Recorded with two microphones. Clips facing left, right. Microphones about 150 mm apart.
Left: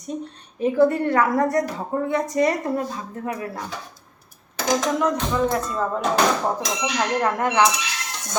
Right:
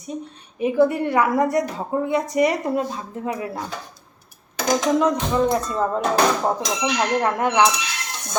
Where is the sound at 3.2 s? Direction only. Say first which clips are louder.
Right 2 dB; 20° right (ahead or behind).